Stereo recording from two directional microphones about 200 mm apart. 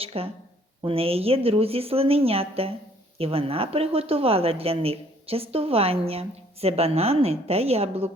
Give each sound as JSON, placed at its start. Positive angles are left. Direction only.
{"t": 0.0, "sound": "speech", "side_deg": -30}